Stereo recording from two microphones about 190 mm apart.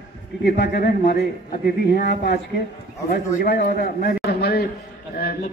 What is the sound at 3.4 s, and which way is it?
A man's voice, 60° left (ahead or behind).